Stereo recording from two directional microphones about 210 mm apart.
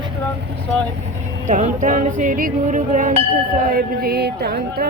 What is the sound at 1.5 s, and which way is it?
Music, 35° right (ahead or behind).